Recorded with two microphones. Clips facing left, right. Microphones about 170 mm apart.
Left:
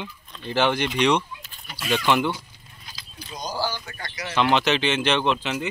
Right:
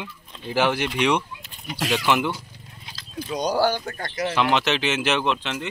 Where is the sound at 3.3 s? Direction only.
70° right (ahead or behind); by 4.3 s 50° right (ahead or behind).